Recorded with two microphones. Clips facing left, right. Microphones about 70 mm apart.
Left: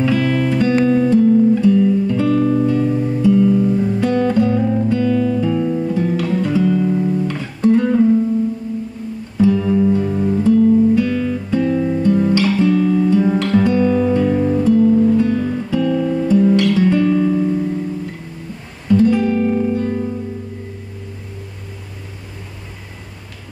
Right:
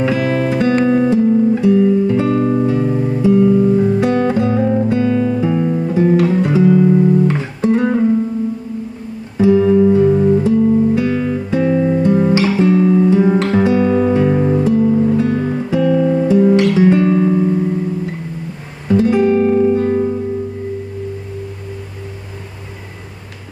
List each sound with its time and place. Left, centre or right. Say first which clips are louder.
0.0 s music: right 1 dB; right
0.8 s guitar: even; right
9.4 s guitar: right 4 dB; centre
18.9 s guitar: right 1 dB; centre